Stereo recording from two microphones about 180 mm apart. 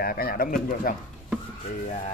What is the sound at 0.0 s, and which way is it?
Speech, 55° left (ahead or behind).